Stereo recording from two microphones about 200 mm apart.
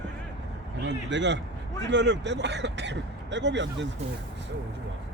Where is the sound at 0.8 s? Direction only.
65° right (ahead or behind).